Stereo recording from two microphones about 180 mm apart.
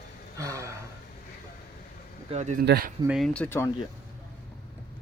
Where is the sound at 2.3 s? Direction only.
40° right (ahead or behind).